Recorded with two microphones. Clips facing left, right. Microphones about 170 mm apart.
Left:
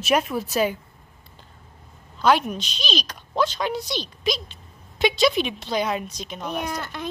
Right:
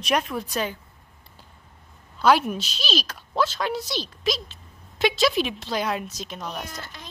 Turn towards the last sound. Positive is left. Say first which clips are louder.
# left 10 dB
turn(degrees=60)  # may be behind; listen again after turning